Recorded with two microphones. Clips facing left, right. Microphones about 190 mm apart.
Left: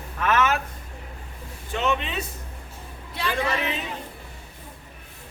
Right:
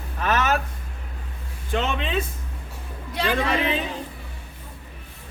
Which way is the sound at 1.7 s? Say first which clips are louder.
Right 1 dB; 90° right.